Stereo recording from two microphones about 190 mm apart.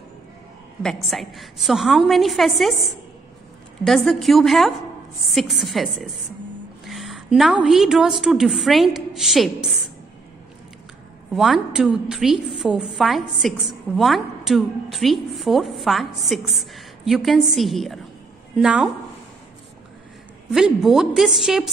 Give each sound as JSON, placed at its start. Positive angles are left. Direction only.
{"t": 1.1, "sound": "a woman's voice", "side_deg": 0}
{"t": 3.8, "sound": "a woman's voice", "side_deg": 0}
{"t": 11.3, "sound": "a woman's voice", "side_deg": 0}
{"t": 20.5, "sound": "a woman's voice", "side_deg": 0}